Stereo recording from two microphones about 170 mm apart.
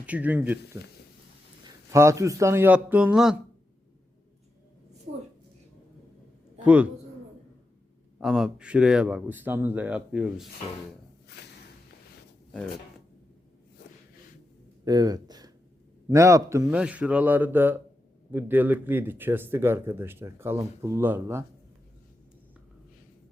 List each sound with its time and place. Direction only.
0.0 s speech: 10° right (ahead or behind)
1.6 s speech: 15° right (ahead or behind)
8.2 s speech: 5° right (ahead or behind)
11.3 s a sound: 75° left (ahead or behind)
14.8 s speech: 20° right (ahead or behind)
16.7 s speech: 5° right (ahead or behind)